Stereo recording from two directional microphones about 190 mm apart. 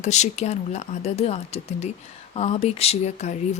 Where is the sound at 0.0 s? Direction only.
35° left (ahead or behind).